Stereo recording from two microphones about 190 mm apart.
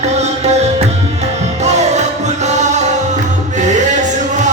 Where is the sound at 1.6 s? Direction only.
35° right (ahead or behind).